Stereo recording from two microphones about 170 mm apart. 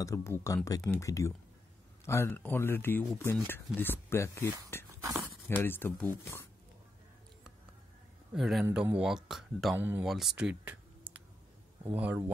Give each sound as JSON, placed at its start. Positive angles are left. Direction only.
{"t": 0.0, "sound": "speech", "side_deg": 15}
{"t": 8.3, "sound": "speech", "side_deg": 0}
{"t": 9.8, "sound": "speech", "side_deg": -10}
{"t": 10.0, "sound": "a sound", "side_deg": 0}
{"t": 11.9, "sound": "speech", "side_deg": -10}